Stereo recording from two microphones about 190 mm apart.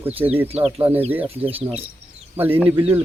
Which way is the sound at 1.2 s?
30° right (ahead or behind).